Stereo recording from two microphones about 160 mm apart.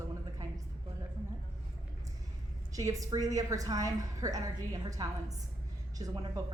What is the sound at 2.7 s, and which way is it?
A woman's voice, 20° right (ahead or behind).